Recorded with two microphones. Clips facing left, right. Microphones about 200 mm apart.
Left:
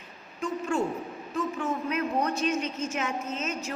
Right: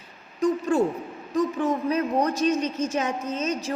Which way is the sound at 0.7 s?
35° right (ahead or behind).